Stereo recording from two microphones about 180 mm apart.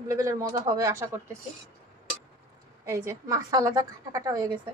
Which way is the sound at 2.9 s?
15° right (ahead or behind).